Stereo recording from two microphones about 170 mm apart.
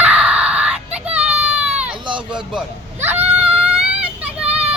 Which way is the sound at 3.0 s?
10° right (ahead or behind).